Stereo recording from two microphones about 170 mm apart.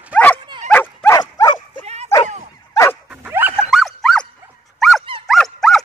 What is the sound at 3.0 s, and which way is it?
Dog, 10° right (ahead or behind).